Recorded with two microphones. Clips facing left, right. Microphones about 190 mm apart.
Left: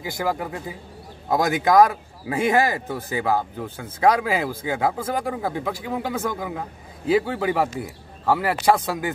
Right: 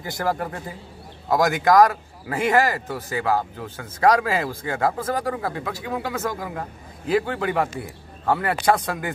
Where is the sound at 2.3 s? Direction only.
15° left (ahead or behind).